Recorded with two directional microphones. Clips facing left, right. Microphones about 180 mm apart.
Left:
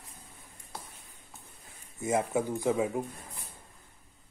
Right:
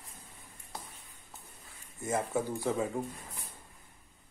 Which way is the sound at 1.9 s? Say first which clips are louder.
Left 3 dB; 15° left (ahead or behind).